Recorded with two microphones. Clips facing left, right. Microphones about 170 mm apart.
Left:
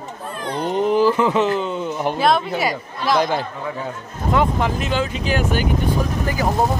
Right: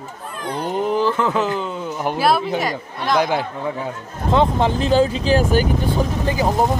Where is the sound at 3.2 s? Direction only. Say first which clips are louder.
Right 1 dB; 10° right (ahead or behind).